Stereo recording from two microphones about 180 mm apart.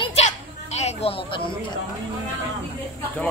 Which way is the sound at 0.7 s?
35° left (ahead or behind).